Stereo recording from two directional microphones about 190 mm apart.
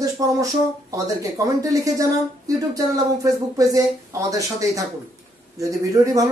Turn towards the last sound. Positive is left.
turn(degrees=-15)  # may be behind; listen again after turning